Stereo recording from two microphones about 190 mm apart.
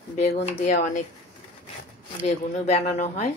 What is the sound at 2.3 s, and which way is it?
A woman's voice, 35° left (ahead or behind).